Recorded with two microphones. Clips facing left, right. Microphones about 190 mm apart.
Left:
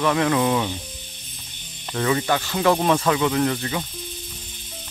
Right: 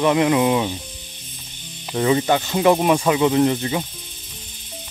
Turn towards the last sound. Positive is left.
turn(degrees=-20)  # may be behind; listen again after turning